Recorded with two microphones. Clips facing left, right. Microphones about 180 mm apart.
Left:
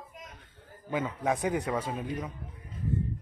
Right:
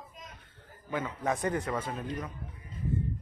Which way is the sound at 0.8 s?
15° left (ahead or behind).